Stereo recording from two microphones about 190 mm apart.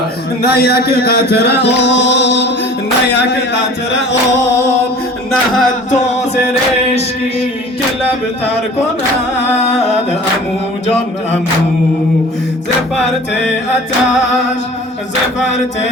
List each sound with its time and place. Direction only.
0.4 s music: 55° left (ahead or behind)